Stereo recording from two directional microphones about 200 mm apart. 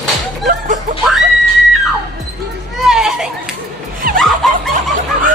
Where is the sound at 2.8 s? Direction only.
Centre (ahead or behind).